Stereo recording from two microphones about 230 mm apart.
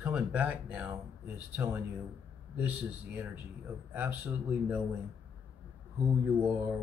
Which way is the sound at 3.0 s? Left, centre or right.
Centre.